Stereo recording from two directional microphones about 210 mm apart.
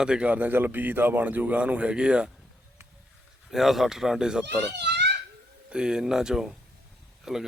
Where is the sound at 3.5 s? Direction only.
Centre (ahead or behind).